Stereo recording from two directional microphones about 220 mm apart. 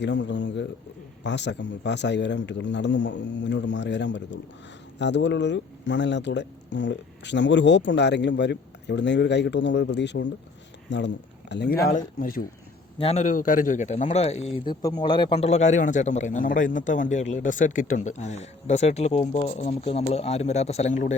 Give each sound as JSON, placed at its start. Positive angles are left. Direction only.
{"t": 0.0, "sound": "a man's voice", "side_deg": 55}
{"t": 11.9, "sound": "a man's voice", "side_deg": 40}
{"t": 13.0, "sound": "a man's voice", "side_deg": 30}